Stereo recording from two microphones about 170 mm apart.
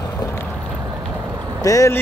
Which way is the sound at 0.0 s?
15° left (ahead or behind).